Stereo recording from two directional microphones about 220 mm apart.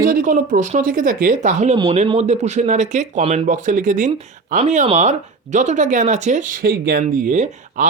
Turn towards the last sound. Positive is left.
turn(degrees=-35)  # may be behind; listen again after turning